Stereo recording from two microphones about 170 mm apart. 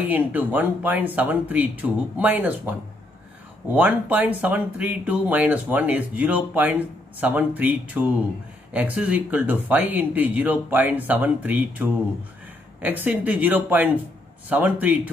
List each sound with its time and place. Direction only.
0.1 s speech: 10° right (ahead or behind)
3.7 s speech: 10° right (ahead or behind)